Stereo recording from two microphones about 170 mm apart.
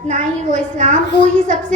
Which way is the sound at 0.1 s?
45° right (ahead or behind).